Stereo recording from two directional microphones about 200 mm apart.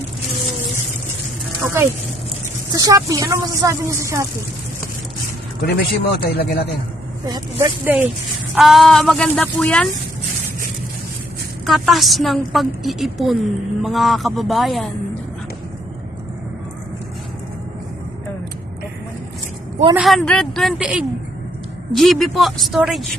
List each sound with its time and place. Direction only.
2.7 s speech: 15° right (ahead or behind)
5.6 s speech: 50° left (ahead or behind)
7.2 s speech: 20° right (ahead or behind)
8.5 s a woman's voice: centre (ahead or behind)
11.6 s a woman's voice: centre (ahead or behind)
20.0 s a woman's voice: centre (ahead or behind)